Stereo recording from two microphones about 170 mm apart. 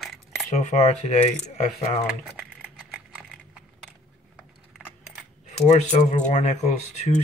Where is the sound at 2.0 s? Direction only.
5° right (ahead or behind).